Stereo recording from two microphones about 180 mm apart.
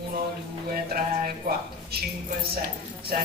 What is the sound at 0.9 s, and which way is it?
A woman's voice, 55° right (ahead or behind).